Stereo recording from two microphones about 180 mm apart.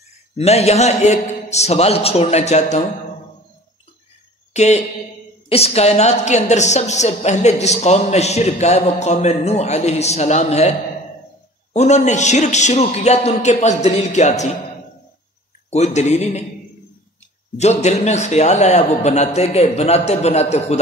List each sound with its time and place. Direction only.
0.4 s a woman's voice: 35° left (ahead or behind)
4.6 s a woman's voice: 40° left (ahead or behind)
11.7 s a woman's voice: 40° left (ahead or behind)
15.7 s a woman's voice: 40° left (ahead or behind)
17.6 s a woman's voice: 40° left (ahead or behind)